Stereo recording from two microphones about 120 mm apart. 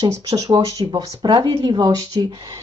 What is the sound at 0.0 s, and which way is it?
Speech, 30° right (ahead or behind).